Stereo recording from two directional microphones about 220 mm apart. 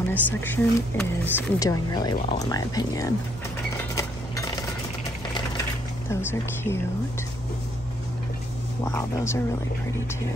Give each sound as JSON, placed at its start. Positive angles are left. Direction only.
{"t": 0.1, "sound": "speech", "side_deg": 10}
{"t": 3.9, "sound": "cutlery", "side_deg": 15}
{"t": 6.0, "sound": "speech", "side_deg": 10}
{"t": 8.8, "sound": "speech", "side_deg": 10}